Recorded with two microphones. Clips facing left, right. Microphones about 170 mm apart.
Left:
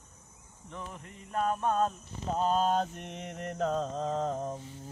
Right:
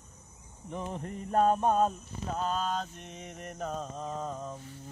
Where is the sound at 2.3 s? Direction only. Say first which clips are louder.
Left 5 dB; 35° left (ahead or behind).